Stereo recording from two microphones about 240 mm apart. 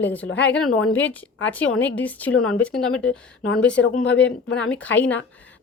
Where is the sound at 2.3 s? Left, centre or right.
Left.